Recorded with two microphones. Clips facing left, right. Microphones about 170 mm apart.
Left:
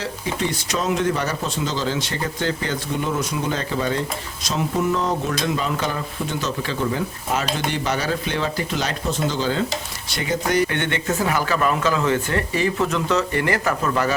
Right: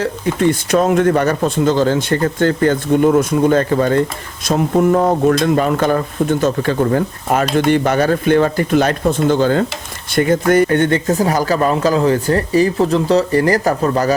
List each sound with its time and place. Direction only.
0.0 s speech: 55° right (ahead or behind); by 14.1 s 35° right (ahead or behind)